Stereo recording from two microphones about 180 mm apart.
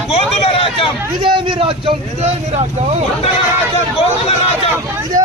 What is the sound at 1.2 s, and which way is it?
Speech, 30° right (ahead or behind).